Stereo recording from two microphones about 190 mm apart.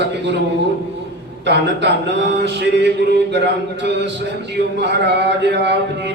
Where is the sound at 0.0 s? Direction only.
65° right (ahead or behind).